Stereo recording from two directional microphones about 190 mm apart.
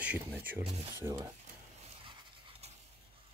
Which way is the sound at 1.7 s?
25° right (ahead or behind).